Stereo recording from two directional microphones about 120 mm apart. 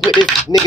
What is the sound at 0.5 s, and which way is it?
Speech, 30° left (ahead or behind).